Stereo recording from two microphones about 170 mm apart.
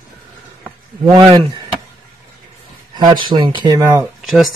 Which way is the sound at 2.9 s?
25° right (ahead or behind).